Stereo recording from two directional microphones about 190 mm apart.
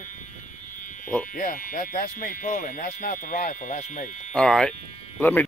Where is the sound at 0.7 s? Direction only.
45° left (ahead or behind).